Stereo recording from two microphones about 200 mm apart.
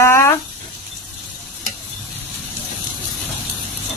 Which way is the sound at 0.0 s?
15° left (ahead or behind).